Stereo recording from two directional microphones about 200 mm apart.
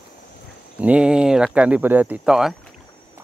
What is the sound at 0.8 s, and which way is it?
Speech, 5° right (ahead or behind).